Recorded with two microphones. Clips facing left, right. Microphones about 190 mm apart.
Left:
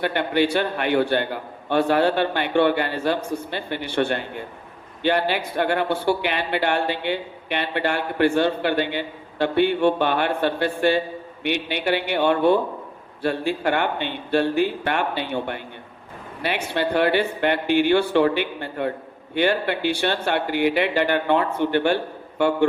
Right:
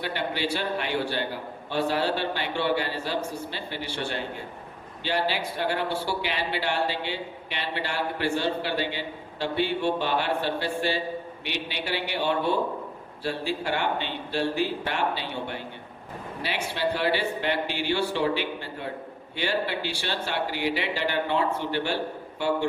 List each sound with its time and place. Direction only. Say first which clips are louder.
0.0 s speech: left 8 dB; 55° left (ahead or behind)